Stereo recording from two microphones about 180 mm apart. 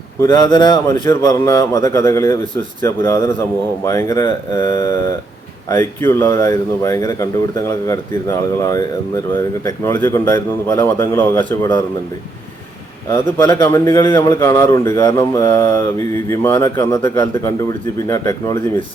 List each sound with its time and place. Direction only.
0.2 s a man's voice: 20° left (ahead or behind)
13.1 s a man's voice: 15° left (ahead or behind)